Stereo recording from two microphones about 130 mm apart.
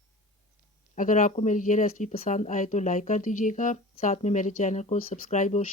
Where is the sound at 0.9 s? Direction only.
80° left.